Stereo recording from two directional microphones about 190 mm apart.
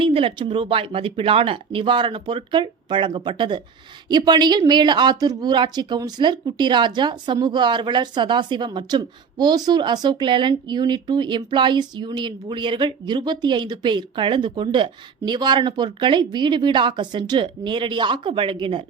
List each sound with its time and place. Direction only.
0.0 s a woman's voice: 30° right (ahead or behind)